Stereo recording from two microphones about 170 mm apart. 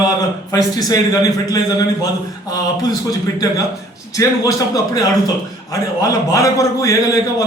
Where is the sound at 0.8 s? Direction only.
20° left (ahead or behind).